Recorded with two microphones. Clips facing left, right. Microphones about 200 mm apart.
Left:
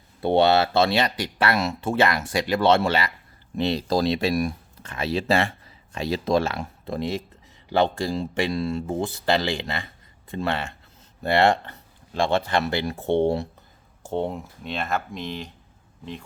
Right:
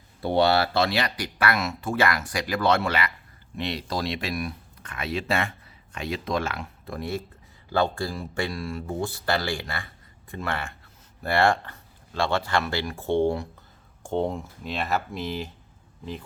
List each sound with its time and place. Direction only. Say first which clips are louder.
0.2 s speech: left 3 dB; 25° left (ahead or behind)
14.0 s speech: even; 5° left (ahead or behind)